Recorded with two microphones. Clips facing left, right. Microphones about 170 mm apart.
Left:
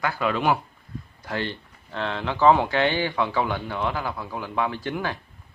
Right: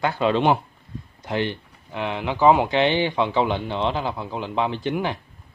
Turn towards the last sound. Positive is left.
turn(degrees=-20)  # may be behind; listen again after turning